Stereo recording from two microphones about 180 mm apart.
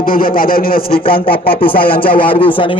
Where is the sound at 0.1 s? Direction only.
55° left (ahead or behind).